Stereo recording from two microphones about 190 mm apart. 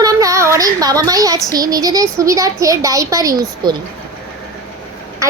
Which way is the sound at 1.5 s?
20° right (ahead or behind).